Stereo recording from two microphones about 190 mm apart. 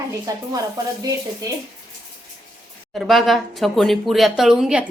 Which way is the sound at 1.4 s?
20° right (ahead or behind).